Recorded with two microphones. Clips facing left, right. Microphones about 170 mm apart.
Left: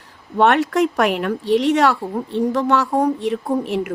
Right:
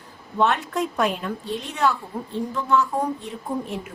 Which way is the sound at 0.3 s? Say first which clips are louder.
Left 7 dB; 70° left (ahead or behind).